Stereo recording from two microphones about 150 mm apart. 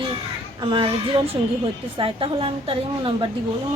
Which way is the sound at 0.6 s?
35° right (ahead or behind).